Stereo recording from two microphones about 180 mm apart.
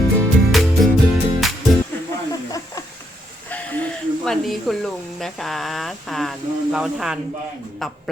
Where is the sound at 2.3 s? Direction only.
20° left (ahead or behind).